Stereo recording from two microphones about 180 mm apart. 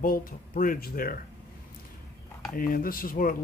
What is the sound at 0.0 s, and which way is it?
Speech, 50° left (ahead or behind).